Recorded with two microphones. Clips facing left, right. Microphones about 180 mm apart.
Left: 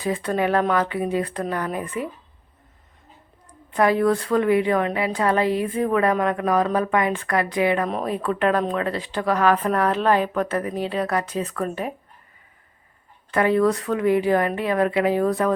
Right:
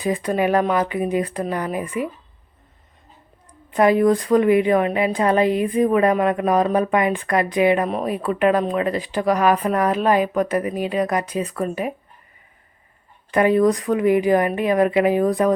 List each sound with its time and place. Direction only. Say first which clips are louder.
0.0 s a woman's voice: right 2 dB; 15° right (ahead or behind)
3.7 s a woman's voice: right 3 dB; 20° right (ahead or behind)
7.9 s a woman's voice: right 2 dB; 5° right (ahead or behind)
13.3 s a woman's voice: right 3 dB; 15° right (ahead or behind)